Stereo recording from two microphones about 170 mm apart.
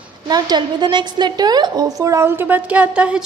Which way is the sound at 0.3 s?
25° right (ahead or behind).